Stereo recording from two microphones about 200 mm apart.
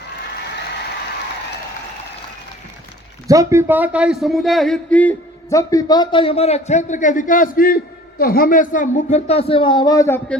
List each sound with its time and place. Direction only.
3.2 s a man's voice: 15° right (ahead or behind); by 10.2 s 15° left (ahead or behind)